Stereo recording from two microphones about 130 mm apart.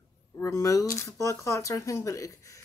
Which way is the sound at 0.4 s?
25° left (ahead or behind).